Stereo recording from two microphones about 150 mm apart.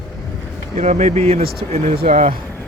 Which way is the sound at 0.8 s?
50° right (ahead or behind).